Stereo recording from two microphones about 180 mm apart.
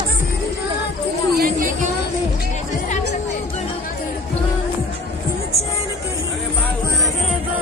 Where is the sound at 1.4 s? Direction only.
50° right (ahead or behind).